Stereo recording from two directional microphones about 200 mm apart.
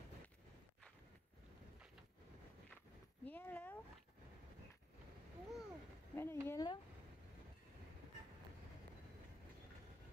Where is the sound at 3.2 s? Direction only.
10° left (ahead or behind).